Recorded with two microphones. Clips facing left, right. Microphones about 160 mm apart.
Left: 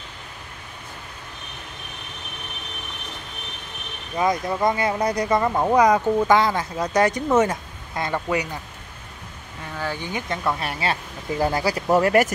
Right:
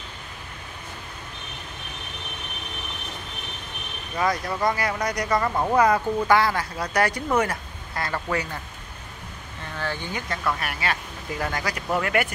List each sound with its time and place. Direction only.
4.2 s speech: 20° left (ahead or behind)
9.8 s speech: 10° left (ahead or behind)
10.2 s speech: 25° left (ahead or behind); by 12.3 s 40° left (ahead or behind)